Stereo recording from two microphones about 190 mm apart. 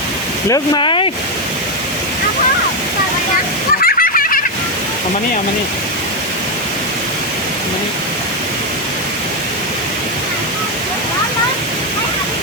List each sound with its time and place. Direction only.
0.5 s speech: 25° left (ahead or behind)
3.8 s splash: 50° left (ahead or behind)